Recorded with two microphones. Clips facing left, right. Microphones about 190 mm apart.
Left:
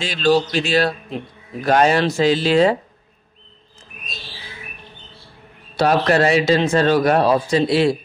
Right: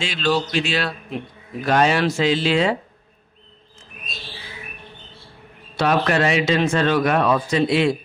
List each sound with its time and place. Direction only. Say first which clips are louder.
0.0 s a man's voice: left 5 dB; 40° left (ahead or behind)
5.8 s a man's voice: left 3 dB; 40° left (ahead or behind)